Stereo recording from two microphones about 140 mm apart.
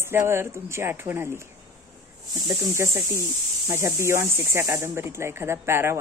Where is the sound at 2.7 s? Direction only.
20° right (ahead or behind).